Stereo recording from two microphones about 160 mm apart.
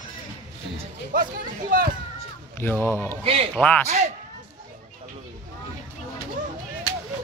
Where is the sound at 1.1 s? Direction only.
60° right (ahead or behind).